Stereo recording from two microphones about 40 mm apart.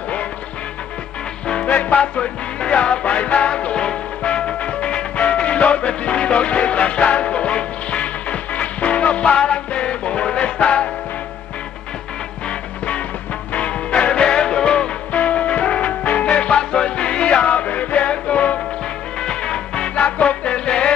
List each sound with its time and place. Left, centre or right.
1.7 s music: left
12.4 s music: left
15.1 s music: left
16.3 s music: left
19.2 s music: left
20.0 s music: left